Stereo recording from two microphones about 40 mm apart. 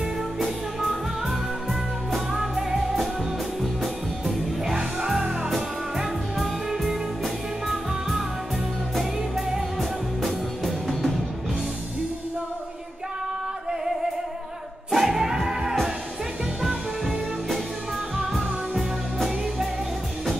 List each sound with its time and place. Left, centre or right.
0.4 s music: centre
4.6 s music: centre
9.8 s music: centre
14.9 s music: centre